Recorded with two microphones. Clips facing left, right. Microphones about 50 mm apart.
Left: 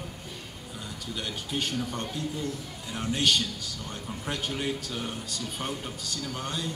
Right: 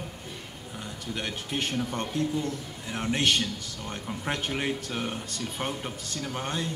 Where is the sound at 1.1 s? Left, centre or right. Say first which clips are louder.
Right 1 dB; right.